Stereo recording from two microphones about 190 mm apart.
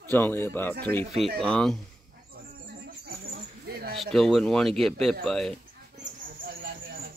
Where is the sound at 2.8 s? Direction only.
55° right (ahead or behind).